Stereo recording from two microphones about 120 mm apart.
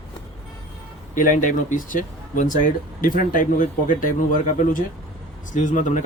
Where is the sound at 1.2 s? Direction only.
90° left.